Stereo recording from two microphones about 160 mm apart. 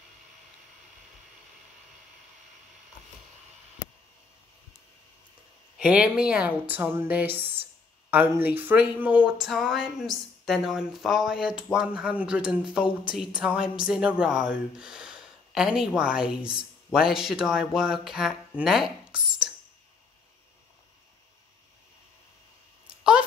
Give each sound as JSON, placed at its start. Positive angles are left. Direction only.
{"t": 5.8, "sound": "a woman's voice", "side_deg": -5}